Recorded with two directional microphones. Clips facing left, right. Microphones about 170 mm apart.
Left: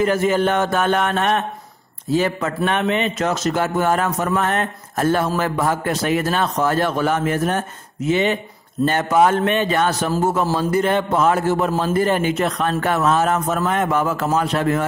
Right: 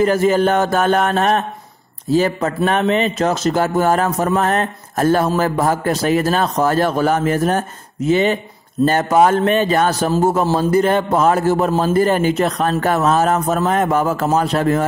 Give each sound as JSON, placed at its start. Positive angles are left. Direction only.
{"t": 0.0, "sound": "speech", "side_deg": -35}